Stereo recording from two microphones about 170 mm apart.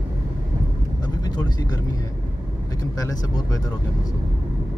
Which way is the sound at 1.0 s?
25° left (ahead or behind).